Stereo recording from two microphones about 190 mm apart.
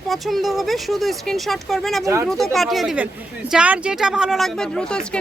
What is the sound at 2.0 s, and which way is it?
Speech, 15° right (ahead or behind).